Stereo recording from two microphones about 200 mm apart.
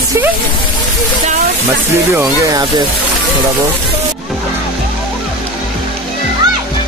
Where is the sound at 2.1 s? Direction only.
20° right (ahead or behind).